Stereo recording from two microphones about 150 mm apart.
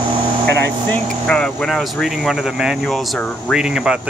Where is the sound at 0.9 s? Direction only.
5° left (ahead or behind).